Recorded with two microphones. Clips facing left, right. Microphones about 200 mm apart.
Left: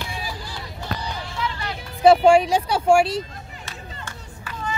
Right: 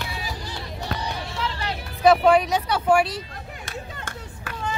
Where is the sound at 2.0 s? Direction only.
30° left (ahead or behind).